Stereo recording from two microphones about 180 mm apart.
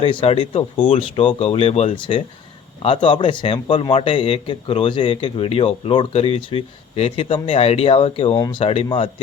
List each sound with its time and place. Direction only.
0.0 s a man's voice: 30° left (ahead or behind)
8.4 s a man's voice: 20° left (ahead or behind)
8.6 s speech: 35° left (ahead or behind)